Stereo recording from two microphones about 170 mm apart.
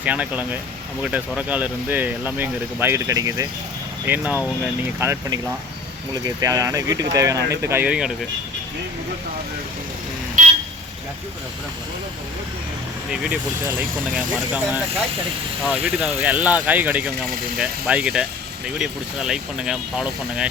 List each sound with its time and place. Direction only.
0.0 s speech: 10° right (ahead or behind)
10.4 s vehicle: 45° right (ahead or behind)
13.1 s speech: 5° right (ahead or behind)